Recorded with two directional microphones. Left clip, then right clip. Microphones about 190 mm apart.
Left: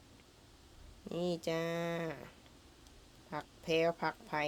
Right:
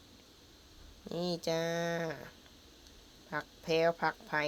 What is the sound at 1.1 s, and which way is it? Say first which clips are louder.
A woman's voice: right 2 dB; 5° left (ahead or behind).